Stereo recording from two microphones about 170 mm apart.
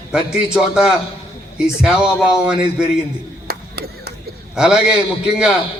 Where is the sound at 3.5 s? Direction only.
70° right (ahead or behind).